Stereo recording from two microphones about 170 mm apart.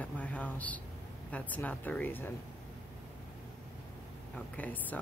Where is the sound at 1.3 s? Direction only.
10° left (ahead or behind).